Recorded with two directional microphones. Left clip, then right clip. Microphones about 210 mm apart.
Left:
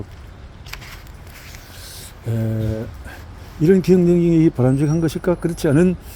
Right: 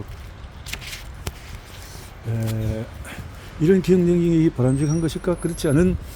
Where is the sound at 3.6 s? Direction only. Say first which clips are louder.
Left 3 dB; 15° left (ahead or behind).